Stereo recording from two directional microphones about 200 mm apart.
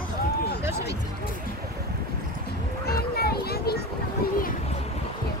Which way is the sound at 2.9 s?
50° left (ahead or behind).